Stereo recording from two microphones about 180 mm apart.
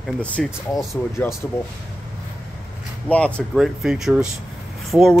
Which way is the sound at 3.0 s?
5° left (ahead or behind).